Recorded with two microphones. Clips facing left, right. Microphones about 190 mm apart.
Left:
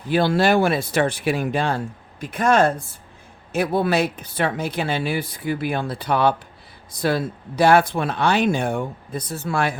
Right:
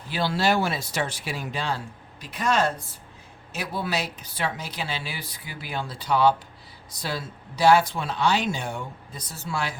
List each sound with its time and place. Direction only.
0.1 s speech: 50° left (ahead or behind)